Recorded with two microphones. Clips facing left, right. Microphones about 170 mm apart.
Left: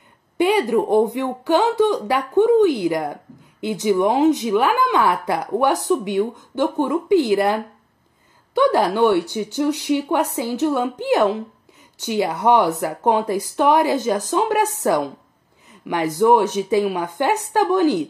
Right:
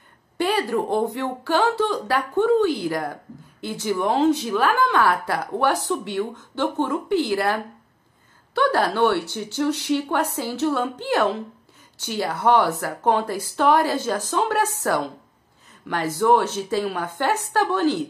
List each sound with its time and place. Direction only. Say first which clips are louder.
0.4 s speech: left 5 dB; 15° left (ahead or behind)